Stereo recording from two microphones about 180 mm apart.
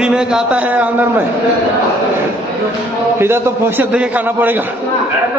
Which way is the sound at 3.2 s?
15° right (ahead or behind).